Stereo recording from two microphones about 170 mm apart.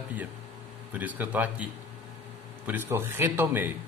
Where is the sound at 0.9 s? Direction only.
10° right (ahead or behind).